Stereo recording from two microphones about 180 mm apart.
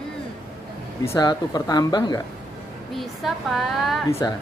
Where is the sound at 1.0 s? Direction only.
20° left (ahead or behind).